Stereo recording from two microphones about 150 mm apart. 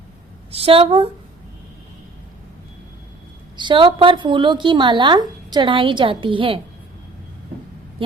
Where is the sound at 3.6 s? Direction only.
35° right (ahead or behind).